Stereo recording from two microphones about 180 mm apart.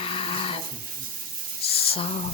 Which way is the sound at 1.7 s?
35° left (ahead or behind).